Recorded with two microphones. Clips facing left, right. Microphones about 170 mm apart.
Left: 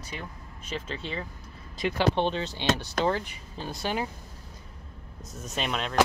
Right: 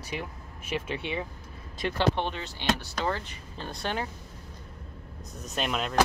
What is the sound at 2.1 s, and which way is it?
Speech, 25° left (ahead or behind).